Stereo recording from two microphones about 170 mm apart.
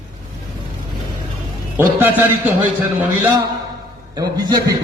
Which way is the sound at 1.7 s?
10° right (ahead or behind).